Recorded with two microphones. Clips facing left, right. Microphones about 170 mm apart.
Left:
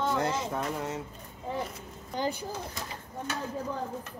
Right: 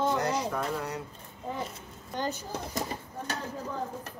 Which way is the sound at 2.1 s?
10° left (ahead or behind).